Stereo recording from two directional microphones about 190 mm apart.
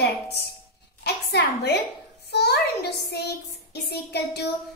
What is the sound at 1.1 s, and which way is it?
A woman's voice, 60° left (ahead or behind).